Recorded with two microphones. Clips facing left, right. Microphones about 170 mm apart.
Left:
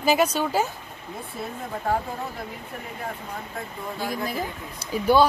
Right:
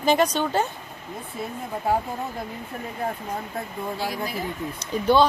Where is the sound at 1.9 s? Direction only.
10° right (ahead or behind).